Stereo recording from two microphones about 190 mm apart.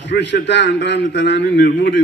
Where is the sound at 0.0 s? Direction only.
65° left (ahead or behind).